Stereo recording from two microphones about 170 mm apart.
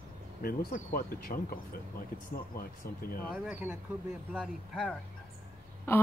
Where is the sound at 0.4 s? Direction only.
60° left (ahead or behind).